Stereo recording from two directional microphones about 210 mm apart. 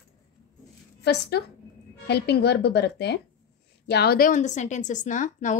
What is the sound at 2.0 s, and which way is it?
A woman's voice, 50° left (ahead or behind).